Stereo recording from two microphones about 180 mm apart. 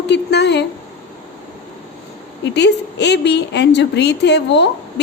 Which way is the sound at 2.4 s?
70° left (ahead or behind).